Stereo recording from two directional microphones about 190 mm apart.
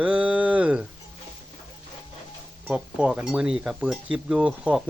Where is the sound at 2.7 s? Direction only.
5° right (ahead or behind).